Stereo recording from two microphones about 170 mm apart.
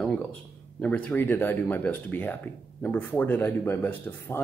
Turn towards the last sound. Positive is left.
turn(degrees=10)  # may be behind; listen again after turning